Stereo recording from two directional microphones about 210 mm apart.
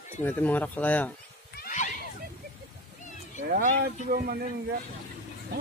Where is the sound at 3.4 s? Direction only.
40° right (ahead or behind).